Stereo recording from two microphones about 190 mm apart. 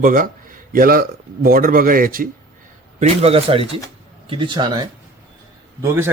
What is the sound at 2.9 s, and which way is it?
Speech, 30° right (ahead or behind).